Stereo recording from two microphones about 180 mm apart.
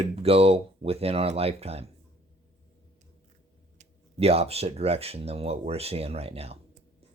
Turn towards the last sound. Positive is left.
turn(degrees=-35)  # may be behind; listen again after turning